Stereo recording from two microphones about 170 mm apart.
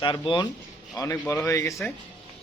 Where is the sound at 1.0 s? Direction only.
15° left (ahead or behind).